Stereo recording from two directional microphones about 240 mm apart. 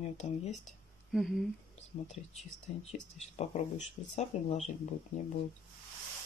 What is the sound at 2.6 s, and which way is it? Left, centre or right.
Speech, left.